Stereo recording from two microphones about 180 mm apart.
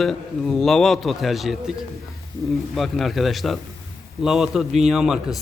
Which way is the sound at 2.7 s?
Centre (ahead or behind).